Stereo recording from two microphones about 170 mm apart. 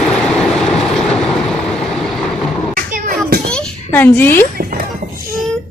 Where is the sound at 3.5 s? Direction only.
10° left (ahead or behind).